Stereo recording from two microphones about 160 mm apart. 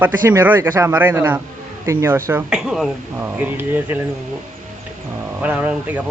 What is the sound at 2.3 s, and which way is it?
Speech, 10° right (ahead or behind).